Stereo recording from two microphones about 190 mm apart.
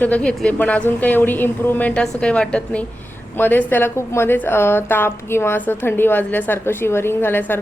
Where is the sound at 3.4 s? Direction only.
10° left (ahead or behind).